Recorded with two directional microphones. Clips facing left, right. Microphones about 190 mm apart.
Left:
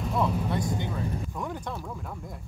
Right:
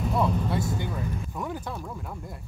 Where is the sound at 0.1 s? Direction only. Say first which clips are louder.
Right 1 dB; centre (ahead or behind).